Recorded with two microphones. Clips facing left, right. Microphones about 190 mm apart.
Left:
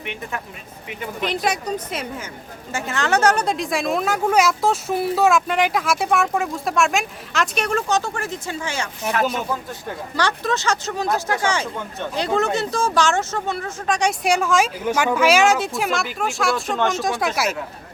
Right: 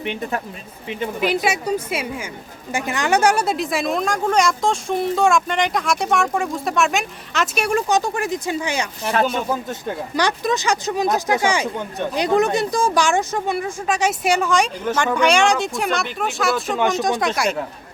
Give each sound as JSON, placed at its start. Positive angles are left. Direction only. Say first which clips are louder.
{"t": 0.0, "sound": "speech", "louder": "right 6 dB", "side_deg": -35}
{"t": 1.2, "sound": "speech", "louder": "right 2 dB", "side_deg": -5}